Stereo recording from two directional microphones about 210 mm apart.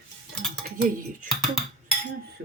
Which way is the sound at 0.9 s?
40° right (ahead or behind).